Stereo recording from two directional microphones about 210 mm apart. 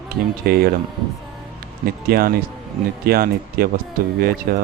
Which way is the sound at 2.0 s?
45° right (ahead or behind).